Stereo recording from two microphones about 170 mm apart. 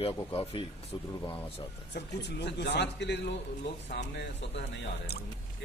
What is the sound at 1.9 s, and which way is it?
Speech, 85° left.